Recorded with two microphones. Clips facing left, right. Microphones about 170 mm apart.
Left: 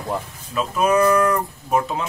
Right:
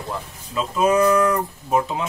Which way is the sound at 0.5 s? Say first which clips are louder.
Even; 20° right (ahead or behind).